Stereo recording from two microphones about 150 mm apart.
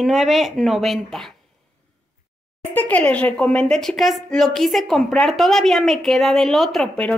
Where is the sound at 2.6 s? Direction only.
15° left (ahead or behind).